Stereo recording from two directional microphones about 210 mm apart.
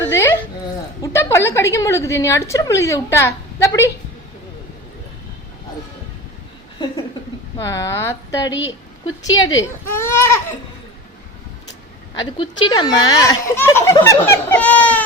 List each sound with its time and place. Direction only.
0.1 s a sound: 15° left (ahead or behind)
1.0 s a woman's voice: 15° left (ahead or behind)
7.6 s a woman's voice: 15° left (ahead or behind)
8.4 s a woman's voice: 65° left (ahead or behind)
9.9 s a woman's voice: 10° left (ahead or behind)
12.2 s a woman's voice: 25° left (ahead or behind); by 15.0 s 5° left (ahead or behind)